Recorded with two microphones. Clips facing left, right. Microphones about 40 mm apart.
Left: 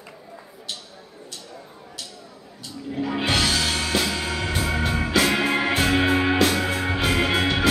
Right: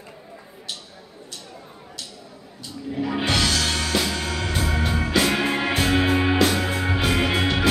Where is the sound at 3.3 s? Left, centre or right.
Centre.